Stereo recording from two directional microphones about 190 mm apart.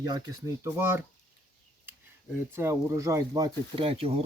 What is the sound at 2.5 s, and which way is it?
Speech, 15° right (ahead or behind).